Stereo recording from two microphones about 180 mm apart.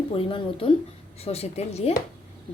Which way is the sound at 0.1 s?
30° left (ahead or behind).